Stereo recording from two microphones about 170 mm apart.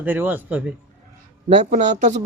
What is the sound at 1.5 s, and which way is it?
Speech, 45° right (ahead or behind).